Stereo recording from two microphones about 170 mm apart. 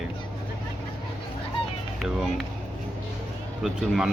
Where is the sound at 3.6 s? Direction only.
Centre (ahead or behind).